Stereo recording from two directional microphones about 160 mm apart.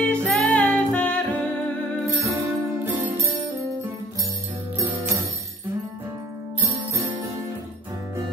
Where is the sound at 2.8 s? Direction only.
20° right (ahead or behind).